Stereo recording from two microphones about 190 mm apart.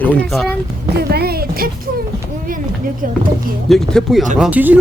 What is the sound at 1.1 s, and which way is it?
Speech, 55° right (ahead or behind).